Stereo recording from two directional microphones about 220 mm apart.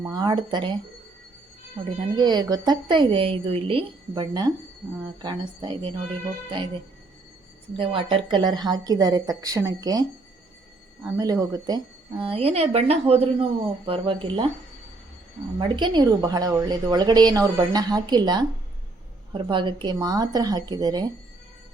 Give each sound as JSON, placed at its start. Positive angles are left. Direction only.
{"t": 0.0, "sound": "a woman's voice", "side_deg": -20}
{"t": 2.1, "sound": "a woman's voice", "side_deg": -20}
{"t": 7.7, "sound": "a woman's voice", "side_deg": -25}
{"t": 15.5, "sound": "a woman's voice", "side_deg": -20}